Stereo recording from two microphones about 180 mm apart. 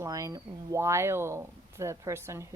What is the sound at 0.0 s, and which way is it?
Speech, 20° right (ahead or behind).